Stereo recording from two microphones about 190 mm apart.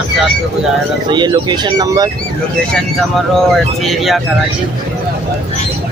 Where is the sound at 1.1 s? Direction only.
20° right (ahead or behind).